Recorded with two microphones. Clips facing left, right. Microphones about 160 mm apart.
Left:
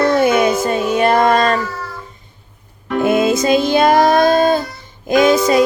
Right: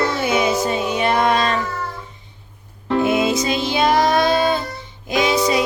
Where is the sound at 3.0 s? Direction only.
50° left (ahead or behind).